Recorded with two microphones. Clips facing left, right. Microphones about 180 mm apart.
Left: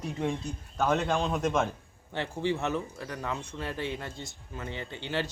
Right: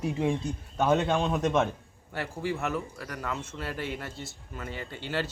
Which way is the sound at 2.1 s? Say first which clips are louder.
Left 2 dB; 20° left (ahead or behind).